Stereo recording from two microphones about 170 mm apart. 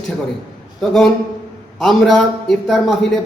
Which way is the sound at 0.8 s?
Centre (ahead or behind).